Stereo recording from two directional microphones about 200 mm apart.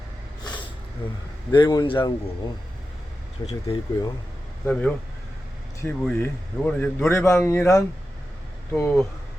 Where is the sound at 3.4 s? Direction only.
20° left (ahead or behind).